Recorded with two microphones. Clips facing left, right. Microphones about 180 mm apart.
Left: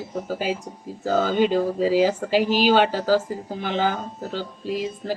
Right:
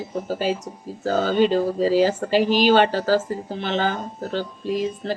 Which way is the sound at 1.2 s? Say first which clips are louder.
Right 4 dB; 15° left (ahead or behind).